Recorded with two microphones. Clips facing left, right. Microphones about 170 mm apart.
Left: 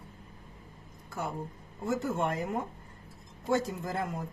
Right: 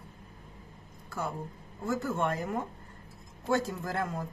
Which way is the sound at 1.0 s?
20° left (ahead or behind).